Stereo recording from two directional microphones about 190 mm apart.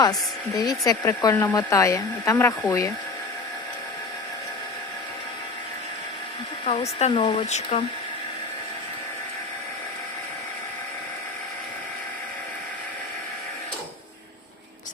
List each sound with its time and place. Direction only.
0.0 s speech: 20° left (ahead or behind)
6.7 s speech: 30° left (ahead or behind)